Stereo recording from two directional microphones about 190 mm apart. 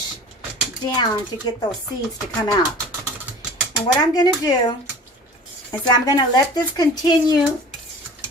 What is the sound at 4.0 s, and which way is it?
Speech, 20° left (ahead or behind).